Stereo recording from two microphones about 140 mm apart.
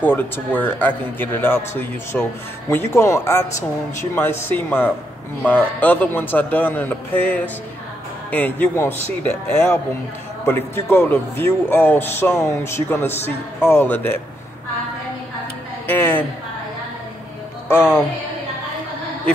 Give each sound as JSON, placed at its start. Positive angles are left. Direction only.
{"t": 0.0, "sound": "a man's voice", "side_deg": 15}
{"t": 10.4, "sound": "a man's voice", "side_deg": 15}
{"t": 15.9, "sound": "a man's voice", "side_deg": 15}
{"t": 17.6, "sound": "speech", "side_deg": 15}